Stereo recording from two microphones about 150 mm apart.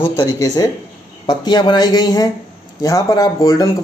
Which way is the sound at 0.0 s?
25° left (ahead or behind).